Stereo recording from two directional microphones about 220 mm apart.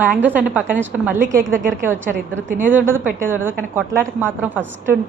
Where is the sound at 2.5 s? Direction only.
35° right (ahead or behind).